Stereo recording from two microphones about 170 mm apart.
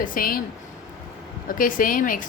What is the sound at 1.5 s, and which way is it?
Speech, 55° left (ahead or behind).